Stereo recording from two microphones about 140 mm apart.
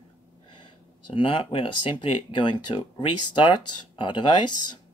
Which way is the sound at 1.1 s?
40° left (ahead or behind).